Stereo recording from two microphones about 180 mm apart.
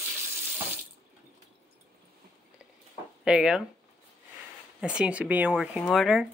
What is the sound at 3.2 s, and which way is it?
Speech, 5° right (ahead or behind).